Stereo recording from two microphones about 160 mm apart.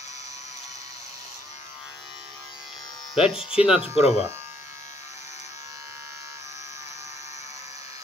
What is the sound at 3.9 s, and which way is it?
Speech, 40° left (ahead or behind).